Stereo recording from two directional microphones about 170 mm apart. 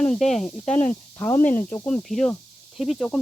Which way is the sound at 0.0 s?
5° left (ahead or behind).